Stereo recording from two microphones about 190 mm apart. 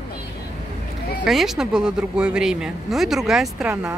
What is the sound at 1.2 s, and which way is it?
Speech, centre (ahead or behind).